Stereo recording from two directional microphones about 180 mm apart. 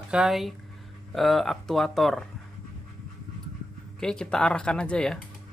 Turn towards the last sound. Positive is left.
turn(degrees=5)  # may be behind; listen again after turning